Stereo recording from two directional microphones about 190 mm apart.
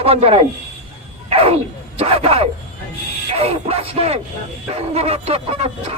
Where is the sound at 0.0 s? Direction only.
30° right (ahead or behind).